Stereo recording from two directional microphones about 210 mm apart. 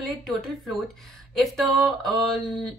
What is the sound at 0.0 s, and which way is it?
A woman's voice, centre (ahead or behind).